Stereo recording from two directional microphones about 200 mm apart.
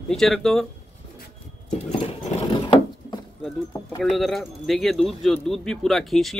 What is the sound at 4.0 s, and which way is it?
Speech, centre (ahead or behind).